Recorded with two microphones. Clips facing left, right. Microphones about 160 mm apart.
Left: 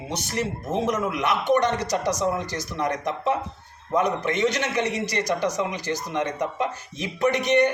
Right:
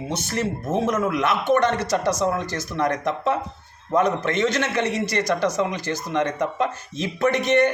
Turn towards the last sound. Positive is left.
turn(degrees=15)  # may be behind; listen again after turning